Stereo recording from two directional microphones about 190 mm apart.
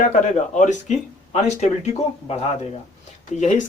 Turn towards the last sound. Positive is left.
turn(degrees=40)  # may be behind; listen again after turning